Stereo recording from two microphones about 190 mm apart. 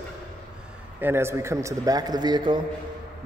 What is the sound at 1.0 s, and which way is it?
A man's voice, 15° right (ahead or behind).